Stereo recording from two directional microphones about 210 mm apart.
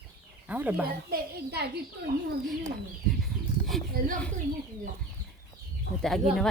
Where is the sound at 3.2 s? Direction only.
Centre (ahead or behind).